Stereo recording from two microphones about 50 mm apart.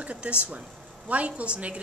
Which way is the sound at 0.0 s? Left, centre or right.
Right.